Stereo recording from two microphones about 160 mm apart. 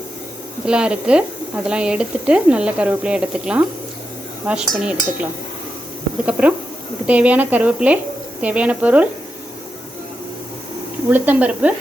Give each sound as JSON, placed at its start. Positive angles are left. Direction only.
{"t": 0.6, "sound": "speech", "side_deg": -5}
{"t": 11.1, "sound": "speech", "side_deg": -10}